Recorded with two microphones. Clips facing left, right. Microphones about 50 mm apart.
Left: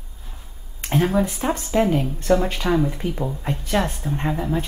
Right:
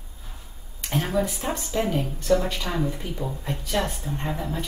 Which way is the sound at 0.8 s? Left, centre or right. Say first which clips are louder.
Left 7 dB; left.